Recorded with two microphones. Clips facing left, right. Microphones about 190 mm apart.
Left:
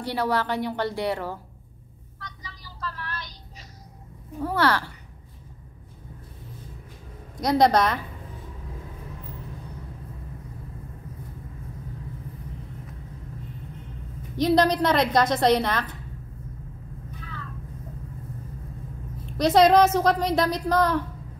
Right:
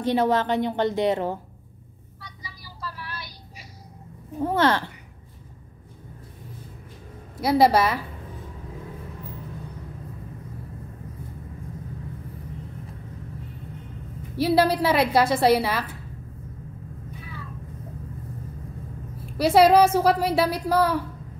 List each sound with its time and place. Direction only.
0.0 s a woman's voice: 20° right (ahead or behind)
2.1 s vehicle: 10° right (ahead or behind)
4.4 s a woman's voice: 20° right (ahead or behind)
7.3 s a woman's voice: 5° right (ahead or behind)
14.3 s a woman's voice: 10° right (ahead or behind)
17.2 s vehicle: 10° right (ahead or behind)
19.2 s a woman's voice: 10° right (ahead or behind)